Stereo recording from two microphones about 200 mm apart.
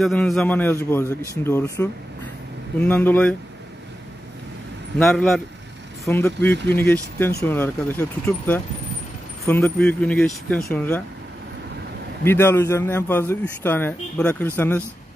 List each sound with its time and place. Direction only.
0.0 s speech: centre (ahead or behind)
4.9 s speech: 5° left (ahead or behind)
12.3 s speech: 10° left (ahead or behind)